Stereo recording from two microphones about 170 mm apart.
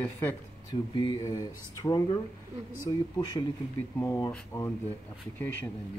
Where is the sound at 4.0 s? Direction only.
20° left (ahead or behind).